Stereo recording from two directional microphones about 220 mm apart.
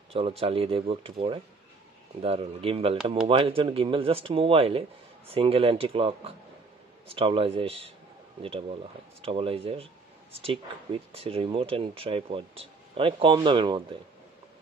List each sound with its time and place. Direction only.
0.1 s speech: 25° right (ahead or behind)